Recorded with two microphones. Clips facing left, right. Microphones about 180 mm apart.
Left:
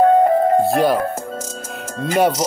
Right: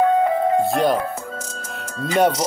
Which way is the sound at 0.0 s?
45° left (ahead or behind).